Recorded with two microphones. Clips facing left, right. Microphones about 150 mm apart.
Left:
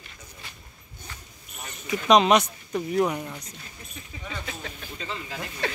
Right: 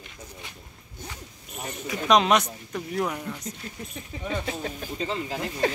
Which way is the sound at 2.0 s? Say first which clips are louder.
Left 2 dB; centre (ahead or behind).